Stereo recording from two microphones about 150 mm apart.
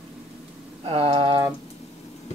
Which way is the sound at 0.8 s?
40° right (ahead or behind).